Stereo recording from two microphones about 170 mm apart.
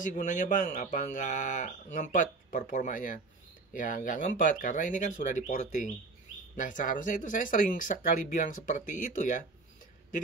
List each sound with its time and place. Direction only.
0.0 s speech: 45° left (ahead or behind)